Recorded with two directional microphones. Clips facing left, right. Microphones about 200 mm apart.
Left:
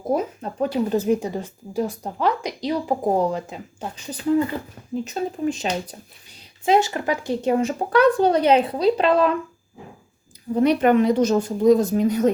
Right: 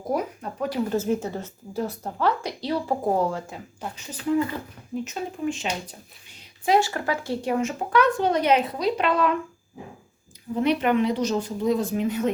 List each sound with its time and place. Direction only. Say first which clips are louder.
0.1 s a sound: left 4 dB; 25° left (ahead or behind)
0.9 s speech: left 4 dB; 15° left (ahead or behind)
5.0 s speech: left 5 dB; 40° left (ahead or behind)
6.7 s speech: left 3 dB; 20° left (ahead or behind)
7.5 s speech: left 3 dB; 35° left (ahead or behind)
10.5 s speech: left 5 dB; 40° left (ahead or behind)